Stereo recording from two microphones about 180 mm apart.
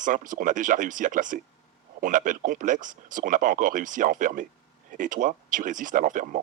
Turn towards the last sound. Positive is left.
turn(degrees=-45)  # may be behind; listen again after turning